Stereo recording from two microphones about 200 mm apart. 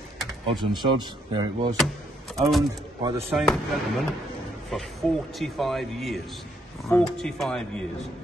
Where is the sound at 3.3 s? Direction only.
Centre (ahead or behind).